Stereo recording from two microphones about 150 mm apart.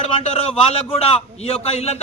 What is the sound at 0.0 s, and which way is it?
A man's voice, 45° left (ahead or behind).